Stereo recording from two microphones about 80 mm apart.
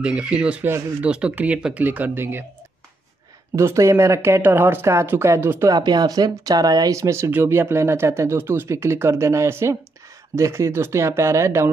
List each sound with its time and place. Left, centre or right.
0.0 s speech: centre
3.5 s speech: right
5.7 s speech: right
7.0 s speech: right